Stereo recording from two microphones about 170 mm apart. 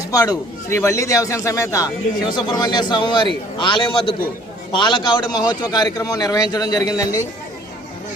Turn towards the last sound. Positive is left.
turn(degrees=20)  # may be behind; listen again after turning